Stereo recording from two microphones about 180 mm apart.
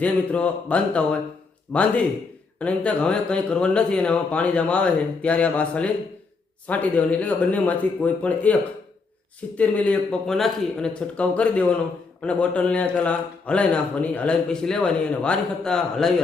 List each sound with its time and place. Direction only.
0.0 s a man's voice: 5° left (ahead or behind)
9.6 s a man's voice: 10° left (ahead or behind)